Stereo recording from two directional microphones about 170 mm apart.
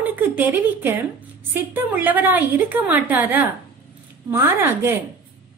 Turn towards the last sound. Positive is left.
turn(degrees=-15)  # may be behind; listen again after turning